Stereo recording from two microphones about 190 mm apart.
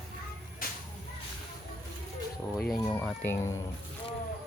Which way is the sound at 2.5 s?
Centre (ahead or behind).